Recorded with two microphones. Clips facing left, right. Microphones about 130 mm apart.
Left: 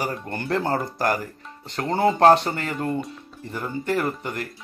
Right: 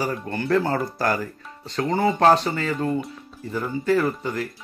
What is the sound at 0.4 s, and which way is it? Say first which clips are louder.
Speech: right 3 dB; 25° left (ahead or behind).